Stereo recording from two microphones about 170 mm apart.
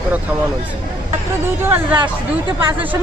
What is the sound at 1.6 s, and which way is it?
Speech, 10° right (ahead or behind).